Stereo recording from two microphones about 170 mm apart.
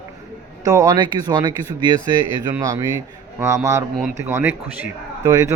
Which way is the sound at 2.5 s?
20° right (ahead or behind).